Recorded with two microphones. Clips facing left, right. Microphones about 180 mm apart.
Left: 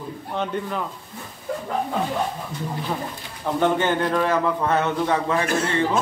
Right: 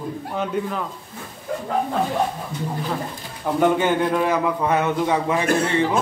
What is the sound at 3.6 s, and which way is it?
A man's voice, 10° right (ahead or behind).